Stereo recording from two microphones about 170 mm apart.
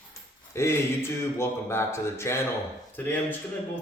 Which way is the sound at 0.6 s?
15° left (ahead or behind).